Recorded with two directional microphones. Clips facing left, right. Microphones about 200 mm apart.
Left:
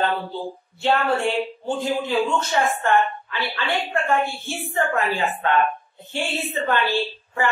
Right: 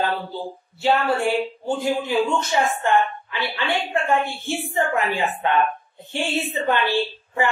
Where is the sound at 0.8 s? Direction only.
10° right (ahead or behind).